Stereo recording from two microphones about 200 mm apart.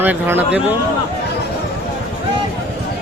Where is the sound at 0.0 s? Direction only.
10° right (ahead or behind).